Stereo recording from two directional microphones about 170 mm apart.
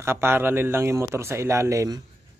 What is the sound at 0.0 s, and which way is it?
Speech, 15° right (ahead or behind).